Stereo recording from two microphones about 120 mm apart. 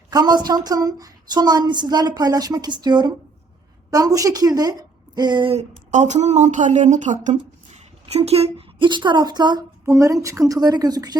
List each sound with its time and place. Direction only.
0.1 s a woman's voice: 35° right (ahead or behind)
5.9 s a woman's voice: 80° right; by 8.6 s 60° right (ahead or behind)
8.8 s a woman's voice: 40° right (ahead or behind)
9.8 s a woman's voice: 25° right (ahead or behind)